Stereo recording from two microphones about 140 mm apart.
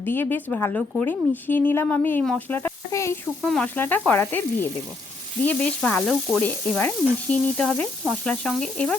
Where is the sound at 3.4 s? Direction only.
5° left (ahead or behind).